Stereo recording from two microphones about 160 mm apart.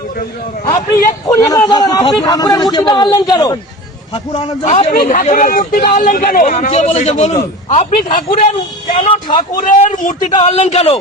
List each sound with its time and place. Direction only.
1.3 s a man's voice: 20° left (ahead or behind)
4.6 s a man's voice: 40° left (ahead or behind)
5.1 s a man's voice: 55° left (ahead or behind)
9.0 s speech: 30° left (ahead or behind)
9.6 s a man's voice: 55° left (ahead or behind)
10.3 s a man's voice: 40° left (ahead or behind)